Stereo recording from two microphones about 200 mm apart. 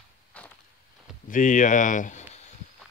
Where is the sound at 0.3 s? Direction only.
5° left (ahead or behind).